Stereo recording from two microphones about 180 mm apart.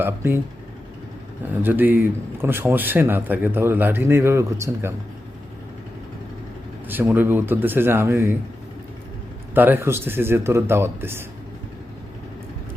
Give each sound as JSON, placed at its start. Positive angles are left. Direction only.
{"t": 0.0, "sound": "a man's voice", "side_deg": -10}
{"t": 1.6, "sound": "a man's voice", "side_deg": -10}
{"t": 6.8, "sound": "a man's voice", "side_deg": -10}
{"t": 9.6, "sound": "a man's voice", "side_deg": -10}